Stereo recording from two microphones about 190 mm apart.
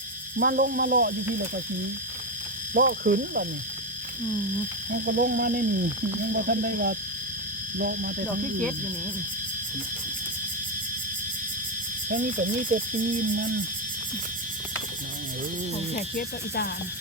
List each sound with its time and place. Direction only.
0.3 s speech: 60° right (ahead or behind)
2.8 s speech: 65° right (ahead or behind)
5.0 s speech: 55° right (ahead or behind)
12.0 s speech: 45° right (ahead or behind)
16.0 s speech: 45° left (ahead or behind)